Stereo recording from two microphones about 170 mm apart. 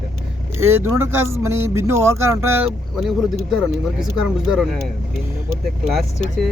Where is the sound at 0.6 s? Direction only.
15° right (ahead or behind).